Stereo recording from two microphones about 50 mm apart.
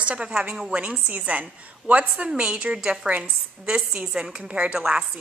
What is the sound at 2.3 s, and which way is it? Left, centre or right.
A woman's voice, centre.